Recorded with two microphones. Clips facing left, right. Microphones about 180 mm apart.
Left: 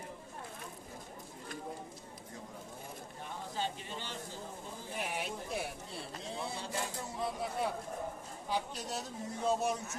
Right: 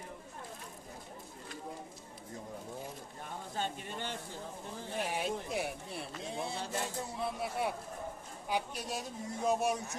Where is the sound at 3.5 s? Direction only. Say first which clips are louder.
Right 1 dB; 55° right (ahead or behind).